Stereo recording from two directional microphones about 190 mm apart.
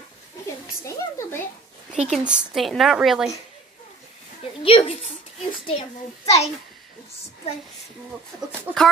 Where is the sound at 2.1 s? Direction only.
5° right (ahead or behind).